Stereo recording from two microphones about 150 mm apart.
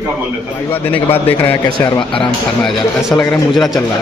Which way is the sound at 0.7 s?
15° left (ahead or behind).